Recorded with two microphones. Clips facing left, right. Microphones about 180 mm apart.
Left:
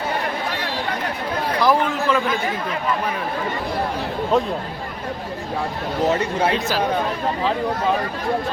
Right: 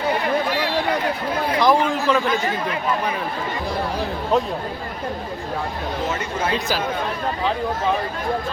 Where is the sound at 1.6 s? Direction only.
Centre (ahead or behind).